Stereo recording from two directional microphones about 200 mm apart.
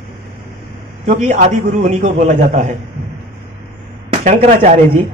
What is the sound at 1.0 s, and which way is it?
A man's voice, 35° right (ahead or behind).